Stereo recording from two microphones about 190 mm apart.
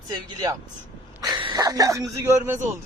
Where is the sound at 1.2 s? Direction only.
25° right (ahead or behind).